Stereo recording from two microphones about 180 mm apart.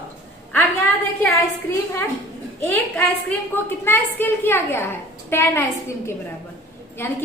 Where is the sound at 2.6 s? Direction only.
10° left (ahead or behind).